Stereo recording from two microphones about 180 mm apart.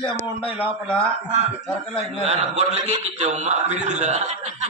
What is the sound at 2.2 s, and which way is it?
Speech, 40° right (ahead or behind).